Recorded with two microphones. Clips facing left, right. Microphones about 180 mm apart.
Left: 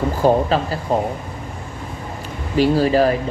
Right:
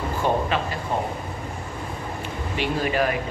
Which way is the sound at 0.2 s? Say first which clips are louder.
Left 7 dB; 35° left (ahead or behind).